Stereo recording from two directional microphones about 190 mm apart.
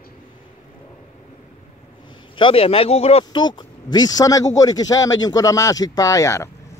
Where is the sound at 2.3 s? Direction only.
30° left (ahead or behind).